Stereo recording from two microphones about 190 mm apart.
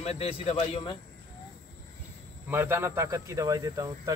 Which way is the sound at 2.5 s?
10° right (ahead or behind).